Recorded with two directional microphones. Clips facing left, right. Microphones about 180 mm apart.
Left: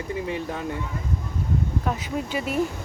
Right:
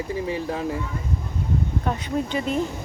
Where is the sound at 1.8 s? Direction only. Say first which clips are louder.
Right 2 dB; 5° left (ahead or behind).